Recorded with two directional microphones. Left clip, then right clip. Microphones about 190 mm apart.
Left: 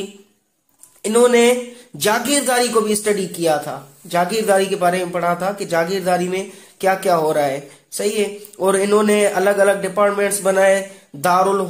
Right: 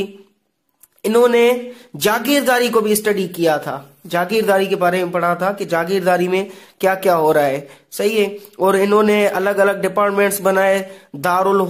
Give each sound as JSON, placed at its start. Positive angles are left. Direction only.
{"t": 1.0, "sound": "speech", "side_deg": -30}